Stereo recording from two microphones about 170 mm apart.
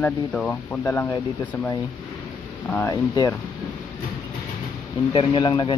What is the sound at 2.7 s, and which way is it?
Speech, 10° left (ahead or behind).